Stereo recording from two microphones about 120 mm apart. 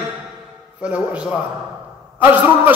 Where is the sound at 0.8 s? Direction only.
10° right (ahead or behind).